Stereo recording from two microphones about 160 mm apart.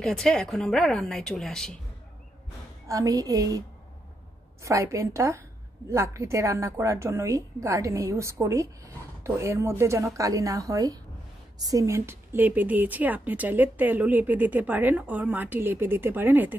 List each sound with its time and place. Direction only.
0.0 s speech: 5° left (ahead or behind)
2.9 s a woman's voice: 20° right (ahead or behind)
4.6 s a woman's voice: 20° right (ahead or behind)